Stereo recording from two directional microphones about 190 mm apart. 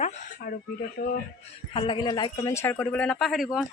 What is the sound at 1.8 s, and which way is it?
Speech, 25° left (ahead or behind).